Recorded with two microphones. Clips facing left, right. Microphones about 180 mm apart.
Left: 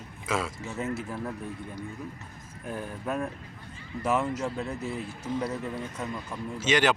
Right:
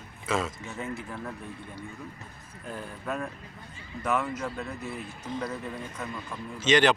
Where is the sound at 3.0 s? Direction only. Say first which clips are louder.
Left 2 dB; 10° left (ahead or behind).